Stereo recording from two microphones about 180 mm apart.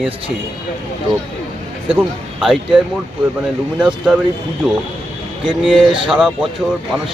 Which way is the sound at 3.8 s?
5° right (ahead or behind).